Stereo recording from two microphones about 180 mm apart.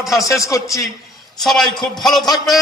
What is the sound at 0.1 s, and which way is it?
Speech, 20° left (ahead or behind).